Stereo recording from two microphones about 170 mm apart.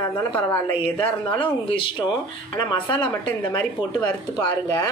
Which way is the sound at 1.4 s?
30° left (ahead or behind).